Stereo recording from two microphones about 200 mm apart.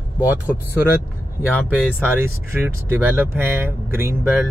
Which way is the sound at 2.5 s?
10° right (ahead or behind).